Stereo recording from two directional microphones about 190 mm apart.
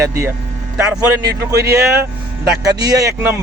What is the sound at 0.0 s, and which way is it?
Speech, 15° right (ahead or behind).